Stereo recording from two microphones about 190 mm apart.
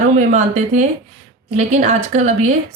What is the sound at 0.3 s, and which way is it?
A woman's voice, 40° right (ahead or behind).